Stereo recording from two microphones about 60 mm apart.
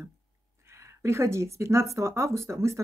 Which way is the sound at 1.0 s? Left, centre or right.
Right.